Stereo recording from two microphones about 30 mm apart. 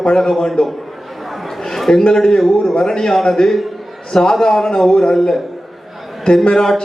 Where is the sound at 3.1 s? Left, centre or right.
Centre.